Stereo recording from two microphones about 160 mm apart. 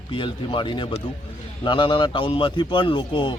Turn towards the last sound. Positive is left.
turn(degrees=30)  # may be behind; listen again after turning